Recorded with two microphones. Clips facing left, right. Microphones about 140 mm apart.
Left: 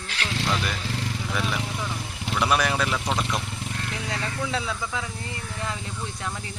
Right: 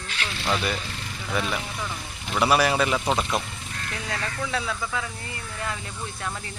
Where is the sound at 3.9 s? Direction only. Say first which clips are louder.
Right 2 dB; 20° left (ahead or behind).